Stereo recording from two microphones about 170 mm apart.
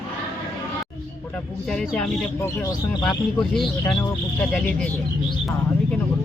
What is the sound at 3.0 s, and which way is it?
Speech, centre (ahead or behind).